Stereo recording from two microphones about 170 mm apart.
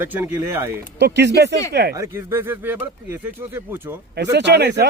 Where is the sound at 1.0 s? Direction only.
85° right.